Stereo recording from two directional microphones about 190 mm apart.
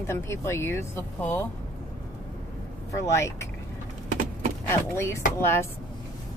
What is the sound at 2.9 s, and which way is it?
Speech, 15° left (ahead or behind).